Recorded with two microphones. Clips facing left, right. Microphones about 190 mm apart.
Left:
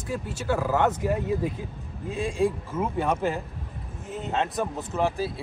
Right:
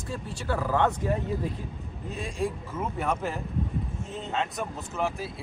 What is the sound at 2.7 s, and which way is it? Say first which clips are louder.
Speech: left 4 dB; 25° left (ahead or behind).